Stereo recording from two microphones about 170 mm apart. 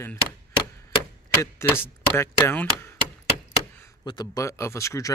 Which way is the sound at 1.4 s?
15° left (ahead or behind).